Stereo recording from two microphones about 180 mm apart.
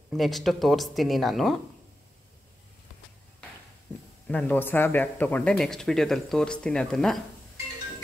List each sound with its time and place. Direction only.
0.1 s speech: centre (ahead or behind)
4.3 s speech: 10° left (ahead or behind)